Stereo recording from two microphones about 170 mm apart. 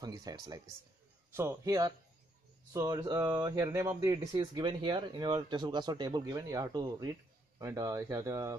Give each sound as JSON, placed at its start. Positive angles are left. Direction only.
{"t": 0.0, "sound": "speech", "side_deg": -20}